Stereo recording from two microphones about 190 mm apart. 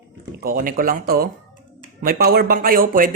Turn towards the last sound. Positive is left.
turn(degrees=-45)  # may be behind; listen again after turning